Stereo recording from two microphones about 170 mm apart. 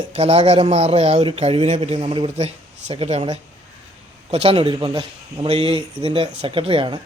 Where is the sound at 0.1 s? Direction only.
35° right (ahead or behind).